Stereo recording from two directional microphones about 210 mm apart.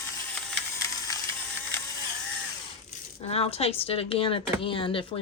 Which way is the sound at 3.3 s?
30° left (ahead or behind).